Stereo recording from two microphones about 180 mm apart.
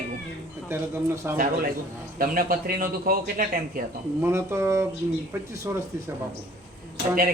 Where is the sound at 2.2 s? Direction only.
50° right (ahead or behind).